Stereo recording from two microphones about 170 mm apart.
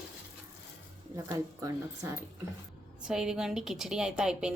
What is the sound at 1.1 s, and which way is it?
Speech, 20° right (ahead or behind).